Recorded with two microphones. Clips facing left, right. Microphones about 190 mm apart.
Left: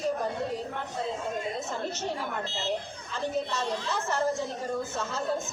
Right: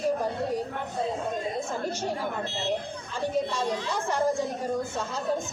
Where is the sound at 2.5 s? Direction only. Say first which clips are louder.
Right 2 dB; 60° right (ahead or behind).